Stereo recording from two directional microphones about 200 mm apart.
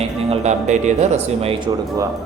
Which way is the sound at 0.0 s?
35° right (ahead or behind).